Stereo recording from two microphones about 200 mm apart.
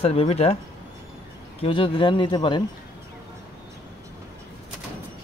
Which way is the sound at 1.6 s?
25° left (ahead or behind).